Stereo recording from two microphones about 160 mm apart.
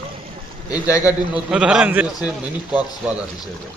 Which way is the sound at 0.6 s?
10° right (ahead or behind).